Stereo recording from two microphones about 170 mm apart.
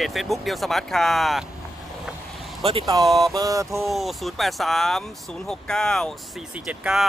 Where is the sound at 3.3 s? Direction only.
20° right (ahead or behind).